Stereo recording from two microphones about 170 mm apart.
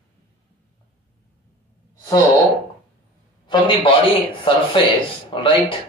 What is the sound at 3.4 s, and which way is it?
A man's voice, 30° left (ahead or behind).